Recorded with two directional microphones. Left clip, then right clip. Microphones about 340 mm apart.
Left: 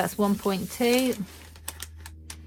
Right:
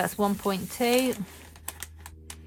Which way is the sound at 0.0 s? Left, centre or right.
Centre.